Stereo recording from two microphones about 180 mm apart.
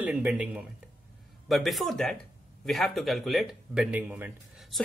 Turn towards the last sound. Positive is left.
turn(degrees=-10)  # may be behind; listen again after turning